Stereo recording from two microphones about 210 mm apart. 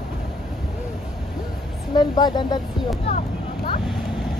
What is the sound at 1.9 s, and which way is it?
Speech, 20° left (ahead or behind).